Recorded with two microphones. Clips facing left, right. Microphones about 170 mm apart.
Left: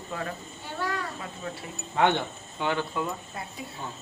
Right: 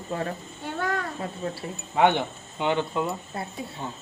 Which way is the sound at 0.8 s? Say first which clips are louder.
Right 3 dB; 50° right (ahead or behind).